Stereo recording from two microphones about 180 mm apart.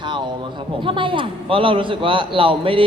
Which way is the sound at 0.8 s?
30° right (ahead or behind).